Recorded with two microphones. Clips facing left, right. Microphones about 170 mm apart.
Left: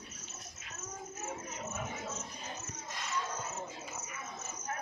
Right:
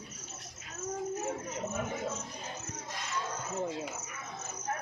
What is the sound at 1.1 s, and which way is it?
Chatter, 30° right (ahead or behind).